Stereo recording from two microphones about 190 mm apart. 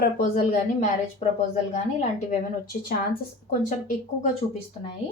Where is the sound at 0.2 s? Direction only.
50° left (ahead or behind).